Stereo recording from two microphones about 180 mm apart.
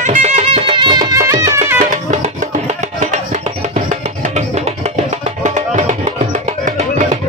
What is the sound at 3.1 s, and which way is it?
Music, 45° right (ahead or behind).